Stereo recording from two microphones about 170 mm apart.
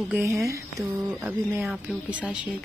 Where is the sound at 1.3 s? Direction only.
5° right (ahead or behind).